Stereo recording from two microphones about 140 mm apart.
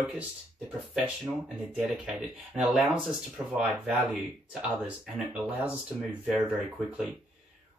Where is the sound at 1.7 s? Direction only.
5° right (ahead or behind).